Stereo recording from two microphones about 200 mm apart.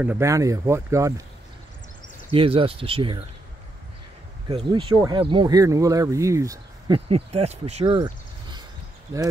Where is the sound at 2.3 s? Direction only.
25° right (ahead or behind).